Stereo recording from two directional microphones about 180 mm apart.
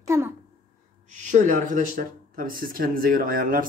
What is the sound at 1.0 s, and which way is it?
Speech, 45° right (ahead or behind).